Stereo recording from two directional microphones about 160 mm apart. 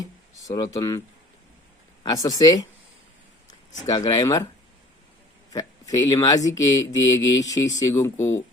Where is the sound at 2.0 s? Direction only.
25° left (ahead or behind).